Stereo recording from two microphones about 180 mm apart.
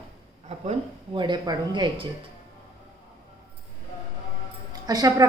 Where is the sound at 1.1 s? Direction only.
25° right (ahead or behind).